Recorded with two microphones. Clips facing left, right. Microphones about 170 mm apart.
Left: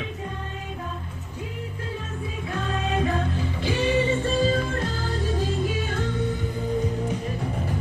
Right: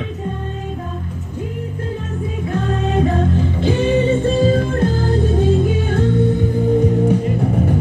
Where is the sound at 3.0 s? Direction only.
50° right (ahead or behind).